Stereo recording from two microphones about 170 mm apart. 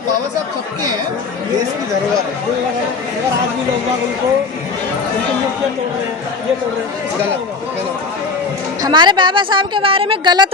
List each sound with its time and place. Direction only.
8.8 s speech: 25° right (ahead or behind)